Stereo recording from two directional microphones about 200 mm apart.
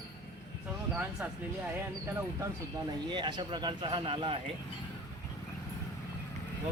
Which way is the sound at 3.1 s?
20° right (ahead or behind).